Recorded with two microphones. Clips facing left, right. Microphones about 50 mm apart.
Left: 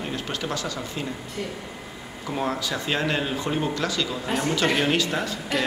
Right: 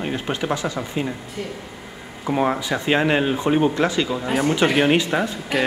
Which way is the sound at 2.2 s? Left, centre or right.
Right.